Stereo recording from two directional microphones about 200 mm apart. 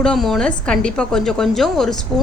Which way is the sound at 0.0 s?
Centre (ahead or behind).